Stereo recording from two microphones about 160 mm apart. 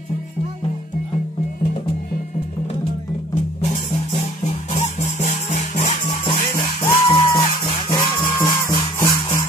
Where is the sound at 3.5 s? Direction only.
40° left (ahead or behind).